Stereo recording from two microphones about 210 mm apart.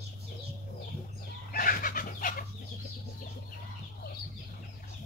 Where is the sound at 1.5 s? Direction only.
40° left (ahead or behind).